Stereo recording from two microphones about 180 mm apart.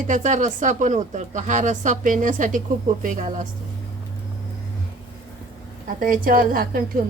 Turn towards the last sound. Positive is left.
turn(degrees=-50)  # may be behind; listen again after turning